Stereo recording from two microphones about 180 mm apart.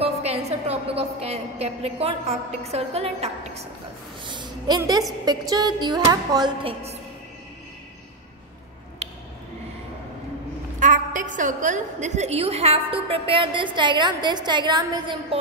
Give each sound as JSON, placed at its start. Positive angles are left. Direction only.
{"t": 0.0, "sound": "a woman's voice", "side_deg": -35}
{"t": 4.3, "sound": "a woman's voice", "side_deg": -25}
{"t": 9.0, "sound": "a sound", "side_deg": -35}
{"t": 10.8, "sound": "a woman's voice", "side_deg": -45}